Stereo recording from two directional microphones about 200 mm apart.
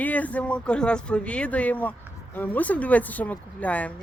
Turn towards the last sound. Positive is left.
turn(degrees=5)  # may be behind; listen again after turning